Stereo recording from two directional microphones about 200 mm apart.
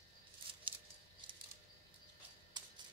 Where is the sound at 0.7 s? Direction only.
25° right (ahead or behind).